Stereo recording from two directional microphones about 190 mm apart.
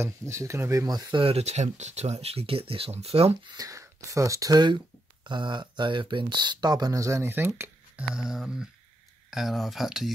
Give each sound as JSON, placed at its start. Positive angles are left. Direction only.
{"t": 0.3, "sound": "speech", "side_deg": -15}
{"t": 3.5, "sound": "speech", "side_deg": -15}